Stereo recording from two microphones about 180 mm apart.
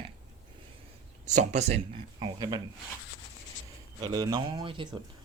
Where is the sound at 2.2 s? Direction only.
25° right (ahead or behind).